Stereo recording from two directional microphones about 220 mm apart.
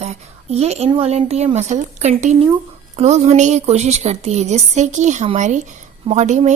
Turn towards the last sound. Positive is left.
turn(degrees=-30)  # may be behind; listen again after turning